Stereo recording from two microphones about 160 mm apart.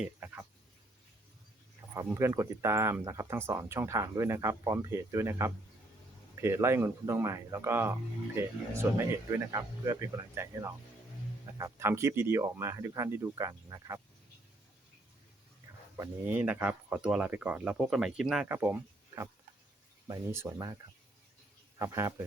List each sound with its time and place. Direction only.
0.0 s speech: 10° right (ahead or behind)
2.0 s speech: 15° right (ahead or behind)
16.0 s speech: 10° right (ahead or behind)
18.4 s speech: 15° right (ahead or behind)
21.8 s speech: 15° right (ahead or behind)